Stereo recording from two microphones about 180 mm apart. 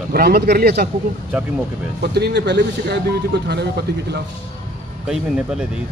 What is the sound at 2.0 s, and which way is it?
A man's voice, 70° right (ahead or behind).